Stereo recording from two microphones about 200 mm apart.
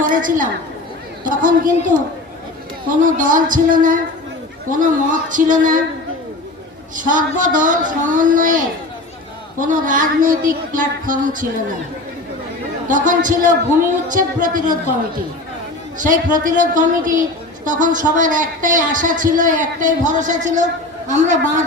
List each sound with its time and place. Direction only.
0.1 s a man's voice: 40° right (ahead or behind)
3.0 s a man's voice: 40° right (ahead or behind)
6.9 s a man's voice: 40° right (ahead or behind)
12.9 s a man's voice: 40° right (ahead or behind)
16.0 s a man's voice: 40° right (ahead or behind)